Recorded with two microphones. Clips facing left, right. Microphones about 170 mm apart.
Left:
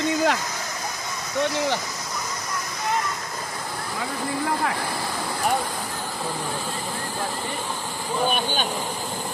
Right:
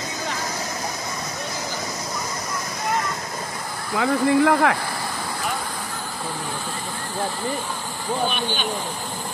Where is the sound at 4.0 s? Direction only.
80° right.